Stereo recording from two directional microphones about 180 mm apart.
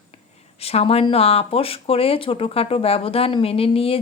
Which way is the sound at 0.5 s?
35° left (ahead or behind).